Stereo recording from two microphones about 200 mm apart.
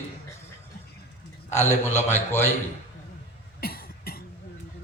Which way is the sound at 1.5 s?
10° left (ahead or behind).